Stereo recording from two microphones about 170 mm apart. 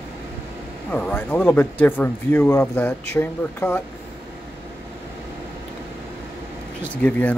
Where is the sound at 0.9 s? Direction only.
10° left (ahead or behind).